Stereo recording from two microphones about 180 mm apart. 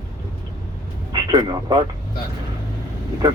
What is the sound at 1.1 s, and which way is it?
Speech, 20° right (ahead or behind).